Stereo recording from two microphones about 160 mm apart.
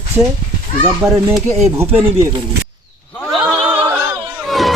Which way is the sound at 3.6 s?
10° right (ahead or behind).